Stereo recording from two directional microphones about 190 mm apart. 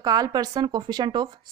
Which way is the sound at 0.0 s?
20° right (ahead or behind).